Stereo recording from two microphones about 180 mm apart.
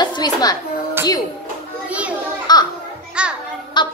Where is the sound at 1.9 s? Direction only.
5° right (ahead or behind).